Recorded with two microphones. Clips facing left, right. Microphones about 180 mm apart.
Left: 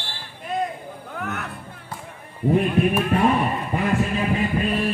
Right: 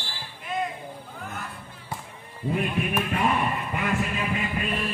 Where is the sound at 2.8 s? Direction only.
35° left (ahead or behind).